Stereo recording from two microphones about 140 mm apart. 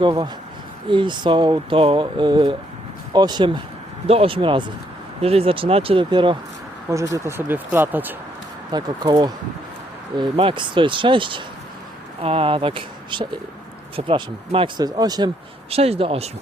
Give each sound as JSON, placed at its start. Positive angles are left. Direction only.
{"t": 0.0, "sound": "speech", "side_deg": -35}
{"t": 4.0, "sound": "speech", "side_deg": -45}
{"t": 6.9, "sound": "speech", "side_deg": -20}
{"t": 8.7, "sound": "speech", "side_deg": -30}
{"t": 15.7, "sound": "speech", "side_deg": -45}